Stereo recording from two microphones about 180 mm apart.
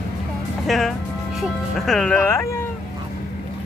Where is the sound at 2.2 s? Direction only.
15° left (ahead or behind).